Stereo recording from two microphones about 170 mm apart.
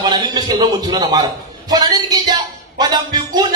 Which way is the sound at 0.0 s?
25° right (ahead or behind).